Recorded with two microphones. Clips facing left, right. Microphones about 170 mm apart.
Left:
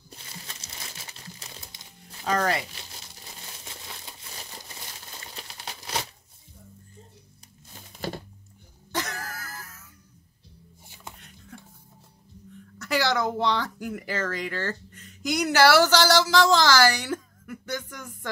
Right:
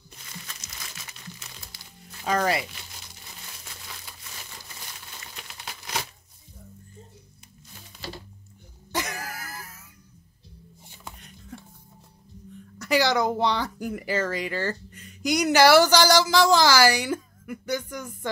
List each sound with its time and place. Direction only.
0.1 s crumpling: 30° left (ahead or behind)
2.2 s speech: 10° right (ahead or behind)
5.3 s crumpling: 35° left (ahead or behind)
8.9 s throat clearing: 10° right (ahead or behind)
12.7 s speech: 15° right (ahead or behind)